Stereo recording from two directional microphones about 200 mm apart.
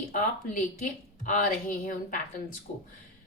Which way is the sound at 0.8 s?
40° left (ahead or behind).